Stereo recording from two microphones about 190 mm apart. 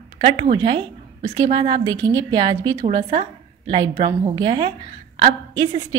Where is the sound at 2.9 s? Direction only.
35° right (ahead or behind).